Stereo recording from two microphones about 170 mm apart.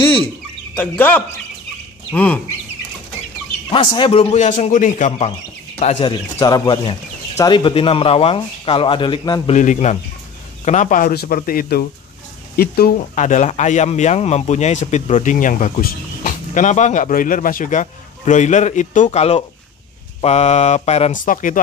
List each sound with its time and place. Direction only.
0.7 s speech: 10° left (ahead or behind)
3.7 s speech: 30° left (ahead or behind)
4.5 s speech: 50° left (ahead or behind)
5.8 s speech: 35° left (ahead or behind)
6.3 s speech: 20° left (ahead or behind)
9.5 s speech: 45° left (ahead or behind); by 13.0 s 65° left (ahead or behind)
13.1 s speech: 45° left (ahead or behind)